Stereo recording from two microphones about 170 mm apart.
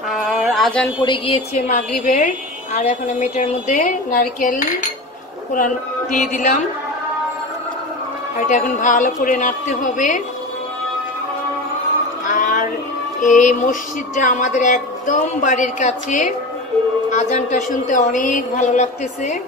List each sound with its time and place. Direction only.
0.1 s male singing: centre (ahead or behind)
1.0 s a woman's voice: 30° left (ahead or behind)
1.7 s a woman's voice: 50° left (ahead or behind)
8.4 s a woman's voice: 50° left (ahead or behind)
12.3 s music: 50° left (ahead or behind)
13.2 s a woman's voice: 50° left (ahead or behind)